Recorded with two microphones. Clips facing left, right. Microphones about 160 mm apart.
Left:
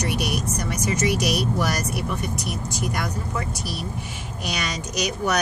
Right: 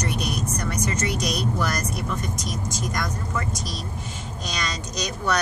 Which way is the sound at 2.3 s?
65° left (ahead or behind).